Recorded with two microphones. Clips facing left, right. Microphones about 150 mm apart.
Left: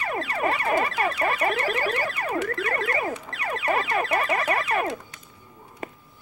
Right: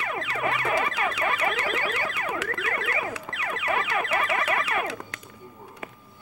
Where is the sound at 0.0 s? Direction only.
40° left (ahead or behind).